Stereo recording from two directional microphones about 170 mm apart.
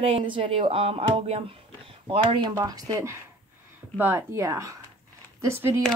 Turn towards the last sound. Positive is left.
turn(degrees=-15)  # may be behind; listen again after turning